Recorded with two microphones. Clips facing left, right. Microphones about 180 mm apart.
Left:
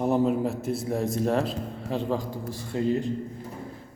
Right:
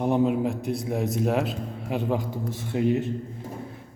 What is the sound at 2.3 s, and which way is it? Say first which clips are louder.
Speech: right 2 dB; 20° right (ahead or behind).